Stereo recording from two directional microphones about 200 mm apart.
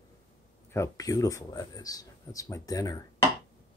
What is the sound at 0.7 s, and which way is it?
Speech, 15° left (ahead or behind).